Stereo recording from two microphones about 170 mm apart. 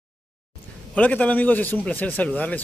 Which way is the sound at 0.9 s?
10° left (ahead or behind).